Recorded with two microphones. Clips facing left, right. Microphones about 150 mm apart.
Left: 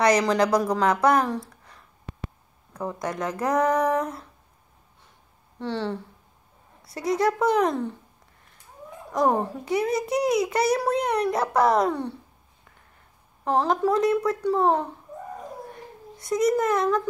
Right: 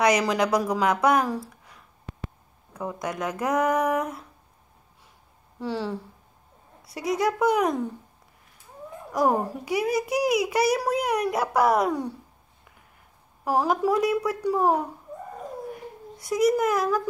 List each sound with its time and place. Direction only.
0.0 s a child's voice: 5° right (ahead or behind)
5.6 s a child's voice: 5° right (ahead or behind)
7.2 s a child's voice: centre (ahead or behind)
9.1 s a child's voice: 5° right (ahead or behind)
13.5 s a woman's voice: 10° right (ahead or behind)
15.7 s a sound: 5° right (ahead or behind)